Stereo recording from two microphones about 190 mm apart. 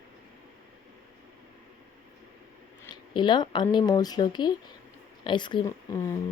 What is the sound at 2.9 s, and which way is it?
Speech, 25° left (ahead or behind).